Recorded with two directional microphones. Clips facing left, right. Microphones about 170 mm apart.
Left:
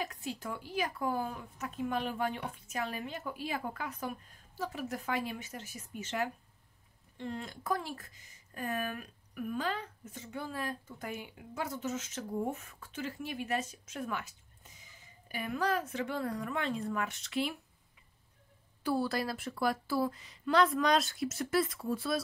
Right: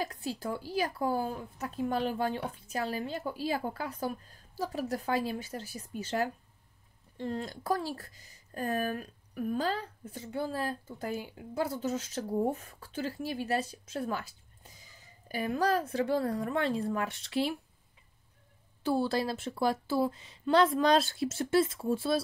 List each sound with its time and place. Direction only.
0.0 s speech: 35° right (ahead or behind)
18.8 s speech: 25° right (ahead or behind)